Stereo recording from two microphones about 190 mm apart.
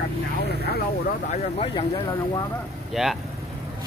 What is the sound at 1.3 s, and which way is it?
Speech, 35° left (ahead or behind).